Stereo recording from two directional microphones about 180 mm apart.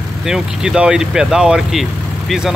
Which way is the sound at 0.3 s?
5° right (ahead or behind).